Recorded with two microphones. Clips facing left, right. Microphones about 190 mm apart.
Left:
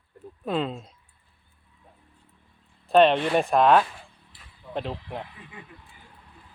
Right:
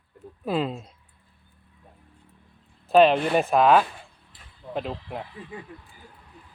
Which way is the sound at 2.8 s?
Centre (ahead or behind).